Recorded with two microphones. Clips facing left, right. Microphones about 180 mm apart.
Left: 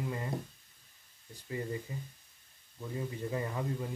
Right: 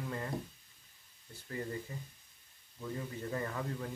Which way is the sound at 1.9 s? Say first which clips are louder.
Left 3 dB; 15° left (ahead or behind).